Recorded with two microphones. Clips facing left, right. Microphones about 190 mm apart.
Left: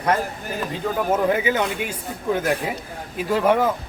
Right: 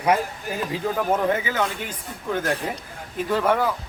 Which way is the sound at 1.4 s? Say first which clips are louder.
Left 4 dB; 15° left (ahead or behind).